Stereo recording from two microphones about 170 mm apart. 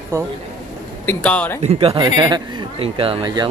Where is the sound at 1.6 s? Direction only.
35° right (ahead or behind).